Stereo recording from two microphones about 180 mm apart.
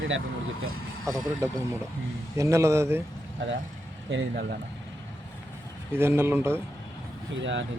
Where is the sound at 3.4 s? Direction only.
90° right.